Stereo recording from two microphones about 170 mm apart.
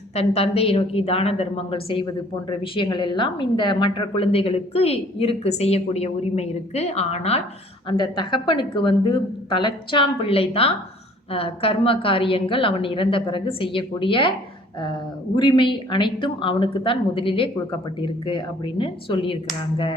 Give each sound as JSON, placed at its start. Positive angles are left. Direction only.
{"t": 0.1, "sound": "a woman's voice", "side_deg": 35}
{"t": 7.9, "sound": "a woman's voice", "side_deg": 25}
{"t": 15.4, "sound": "a woman's voice", "side_deg": 30}